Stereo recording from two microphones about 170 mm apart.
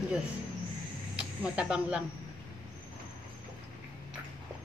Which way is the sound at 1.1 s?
5° right (ahead or behind).